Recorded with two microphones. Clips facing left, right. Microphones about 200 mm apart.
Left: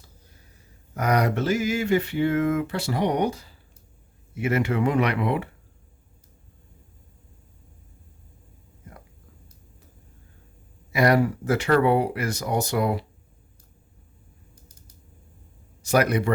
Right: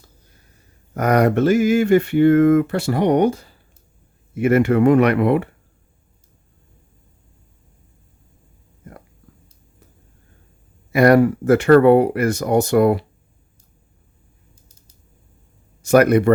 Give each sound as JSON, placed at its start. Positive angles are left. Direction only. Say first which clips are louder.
{"t": 0.9, "sound": "a sound", "louder": "right 7 dB", "side_deg": -55}
{"t": 4.4, "sound": "speech", "louder": "right 9 dB", "side_deg": -55}
{"t": 10.9, "sound": "speech", "louder": "right 7 dB", "side_deg": -55}
{"t": 15.8, "sound": "speech", "louder": "right 8 dB", "side_deg": -55}